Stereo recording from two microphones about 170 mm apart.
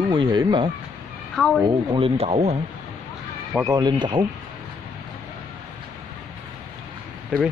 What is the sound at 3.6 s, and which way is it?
Speech, 25° right (ahead or behind).